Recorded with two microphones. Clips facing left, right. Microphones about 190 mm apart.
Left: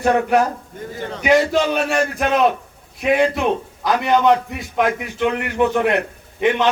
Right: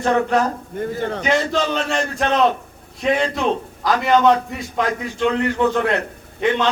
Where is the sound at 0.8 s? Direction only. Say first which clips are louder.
Right 8 dB; 60° right (ahead or behind).